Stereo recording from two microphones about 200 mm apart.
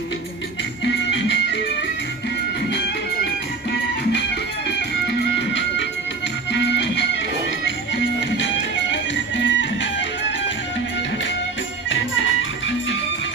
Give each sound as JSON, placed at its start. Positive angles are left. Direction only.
{"t": 0.8, "sound": "music", "side_deg": 65}
{"t": 4.6, "sound": "music", "side_deg": 60}